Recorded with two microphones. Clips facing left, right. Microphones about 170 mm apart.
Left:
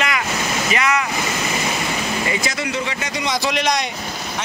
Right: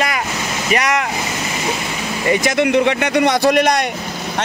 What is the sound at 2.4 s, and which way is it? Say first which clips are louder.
Speech: right 10 dB; 55° right (ahead or behind).